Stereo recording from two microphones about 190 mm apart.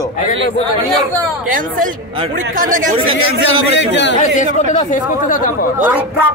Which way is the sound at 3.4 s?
65° left (ahead or behind).